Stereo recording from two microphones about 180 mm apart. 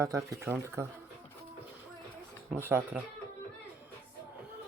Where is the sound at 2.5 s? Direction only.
10° right (ahead or behind).